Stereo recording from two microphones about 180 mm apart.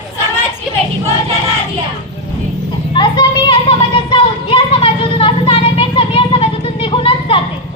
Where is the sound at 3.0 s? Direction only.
25° left (ahead or behind).